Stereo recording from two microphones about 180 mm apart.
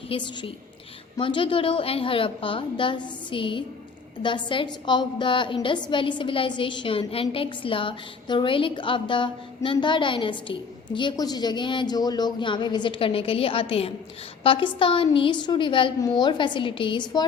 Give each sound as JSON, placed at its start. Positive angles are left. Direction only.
{"t": 0.1, "sound": "a woman's voice", "side_deg": 30}